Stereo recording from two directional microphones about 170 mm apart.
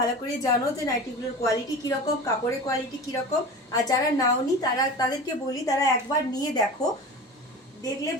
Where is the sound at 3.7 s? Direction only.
20° left (ahead or behind).